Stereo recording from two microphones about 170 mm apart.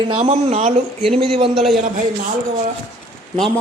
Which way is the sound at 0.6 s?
40° right (ahead or behind).